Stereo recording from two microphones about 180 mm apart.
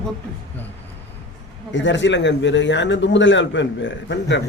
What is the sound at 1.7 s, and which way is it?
A man's voice, 90° left.